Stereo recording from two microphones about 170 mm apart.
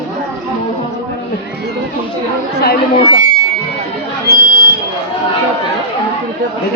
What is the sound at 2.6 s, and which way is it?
Speech, 65° left (ahead or behind).